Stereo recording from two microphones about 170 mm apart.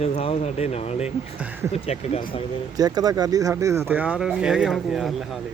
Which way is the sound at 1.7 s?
40° left (ahead or behind).